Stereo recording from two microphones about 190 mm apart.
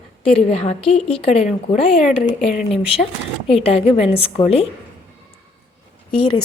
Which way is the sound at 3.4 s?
30° left (ahead or behind).